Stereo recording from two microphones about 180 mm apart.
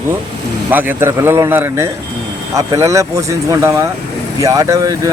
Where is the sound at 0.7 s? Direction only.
10° right (ahead or behind).